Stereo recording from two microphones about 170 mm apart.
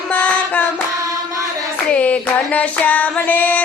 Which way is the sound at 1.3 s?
20° right (ahead or behind).